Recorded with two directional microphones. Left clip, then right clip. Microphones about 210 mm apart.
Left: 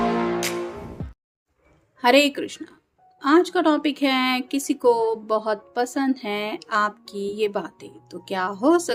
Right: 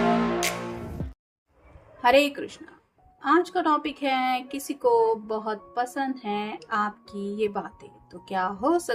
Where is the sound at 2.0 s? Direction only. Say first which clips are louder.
Left 3 dB; 35° left (ahead or behind).